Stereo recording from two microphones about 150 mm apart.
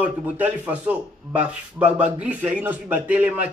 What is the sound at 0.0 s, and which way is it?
A man's voice, 10° right (ahead or behind).